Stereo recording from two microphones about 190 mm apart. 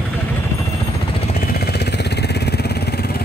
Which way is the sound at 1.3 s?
55° left (ahead or behind).